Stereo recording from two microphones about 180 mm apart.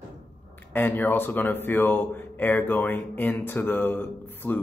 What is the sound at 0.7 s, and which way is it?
Speech, 10° left (ahead or behind).